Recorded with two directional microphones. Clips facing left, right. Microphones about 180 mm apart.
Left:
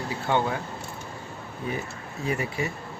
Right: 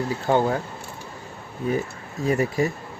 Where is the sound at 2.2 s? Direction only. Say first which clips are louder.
Right 7 dB; 40° right (ahead or behind).